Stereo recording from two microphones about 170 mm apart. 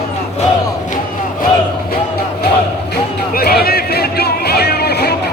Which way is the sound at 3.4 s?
65° left (ahead or behind).